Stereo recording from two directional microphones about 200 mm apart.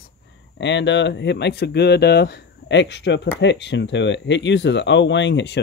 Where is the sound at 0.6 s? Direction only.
60° left (ahead or behind).